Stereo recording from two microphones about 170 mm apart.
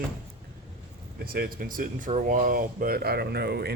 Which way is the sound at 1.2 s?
60° right (ahead or behind).